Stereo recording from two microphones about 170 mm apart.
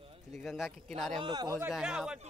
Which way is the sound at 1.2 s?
20° right (ahead or behind).